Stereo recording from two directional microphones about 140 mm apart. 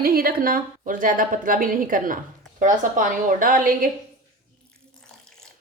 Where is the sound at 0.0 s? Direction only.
90° right.